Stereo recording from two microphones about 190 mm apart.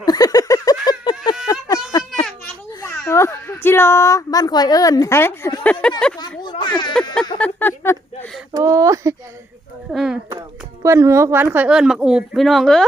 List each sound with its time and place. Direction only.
0.0 s a sound: 20° left (ahead or behind)
3.1 s speech: 15° left (ahead or behind)
5.8 s speech: 5° left (ahead or behind)
6.4 s speech: 25° left (ahead or behind)
7.3 s a sound: 10° left (ahead or behind)
8.5 s speech: 20° right (ahead or behind)
9.9 s speech: centre (ahead or behind)
10.8 s speech: 15° right (ahead or behind); by 12.8 s centre (ahead or behind)